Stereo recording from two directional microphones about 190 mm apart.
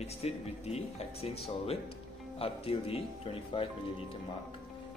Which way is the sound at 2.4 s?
30° left (ahead or behind).